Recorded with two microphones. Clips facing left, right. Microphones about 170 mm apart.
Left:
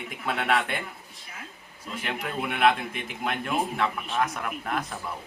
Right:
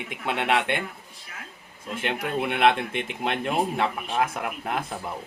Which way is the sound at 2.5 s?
25° right (ahead or behind).